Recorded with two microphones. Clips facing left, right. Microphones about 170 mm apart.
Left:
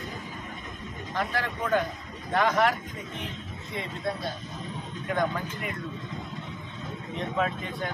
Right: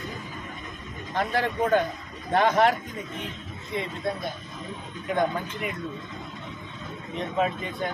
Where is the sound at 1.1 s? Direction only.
25° right (ahead or behind).